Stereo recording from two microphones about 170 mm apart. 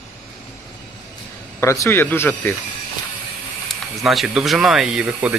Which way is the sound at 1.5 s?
15° left (ahead or behind).